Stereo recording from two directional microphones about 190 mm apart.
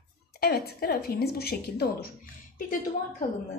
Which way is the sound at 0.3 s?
55° left (ahead or behind).